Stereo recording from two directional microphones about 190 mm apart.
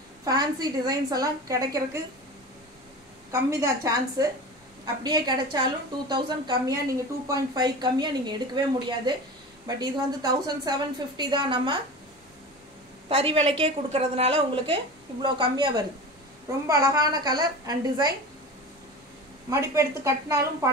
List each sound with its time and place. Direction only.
0.2 s a woman's voice: 20° right (ahead or behind)
3.3 s a woman's voice: 15° right (ahead or behind)
13.1 s a woman's voice: 30° right (ahead or behind)
19.5 s a woman's voice: 15° right (ahead or behind)